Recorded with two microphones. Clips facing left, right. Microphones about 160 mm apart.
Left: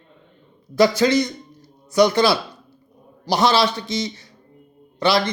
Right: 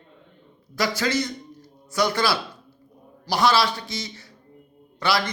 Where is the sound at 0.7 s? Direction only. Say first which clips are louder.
Left 8 dB; 20° left (ahead or behind).